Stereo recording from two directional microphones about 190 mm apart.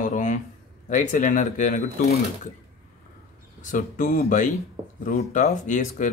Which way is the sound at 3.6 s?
40° left (ahead or behind).